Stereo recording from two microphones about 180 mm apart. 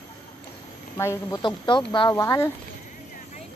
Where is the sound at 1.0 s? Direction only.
15° left (ahead or behind).